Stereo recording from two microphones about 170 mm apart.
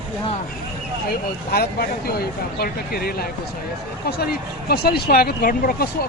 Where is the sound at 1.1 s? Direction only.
65° left (ahead or behind).